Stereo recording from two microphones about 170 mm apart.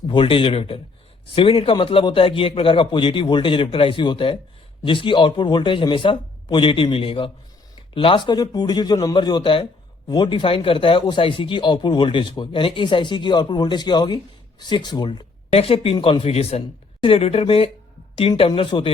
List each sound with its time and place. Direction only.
0.1 s speech: 30° left (ahead or behind)